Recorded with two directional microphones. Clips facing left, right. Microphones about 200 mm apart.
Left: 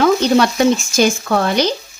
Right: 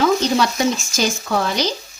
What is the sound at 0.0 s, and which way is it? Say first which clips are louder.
Speech: left 4 dB; 60° left (ahead or behind).